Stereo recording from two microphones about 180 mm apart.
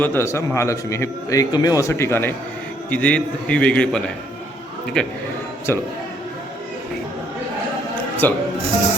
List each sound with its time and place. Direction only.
0.0 s a man's voice: 15° left (ahead or behind)
8.2 s a man's voice: 10° left (ahead or behind)